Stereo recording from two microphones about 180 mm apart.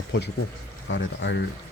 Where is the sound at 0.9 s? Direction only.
85° left.